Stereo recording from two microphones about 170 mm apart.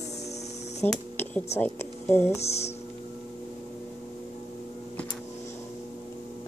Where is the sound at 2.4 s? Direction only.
40° left (ahead or behind).